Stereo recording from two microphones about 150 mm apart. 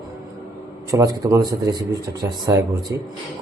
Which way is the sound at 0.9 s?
20° right (ahead or behind).